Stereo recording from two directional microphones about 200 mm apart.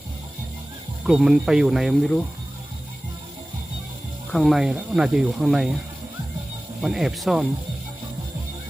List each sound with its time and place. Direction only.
1.0 s speech: 5° right (ahead or behind)
4.3 s speech: centre (ahead or behind)
6.8 s speech: centre (ahead or behind)